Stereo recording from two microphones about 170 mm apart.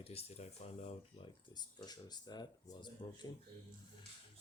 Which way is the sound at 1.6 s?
25° left (ahead or behind).